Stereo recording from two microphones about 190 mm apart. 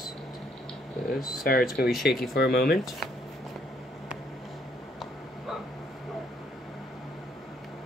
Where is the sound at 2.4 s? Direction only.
50° left (ahead or behind).